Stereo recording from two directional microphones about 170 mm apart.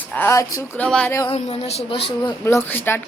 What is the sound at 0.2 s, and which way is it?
Speech, 15° left (ahead or behind).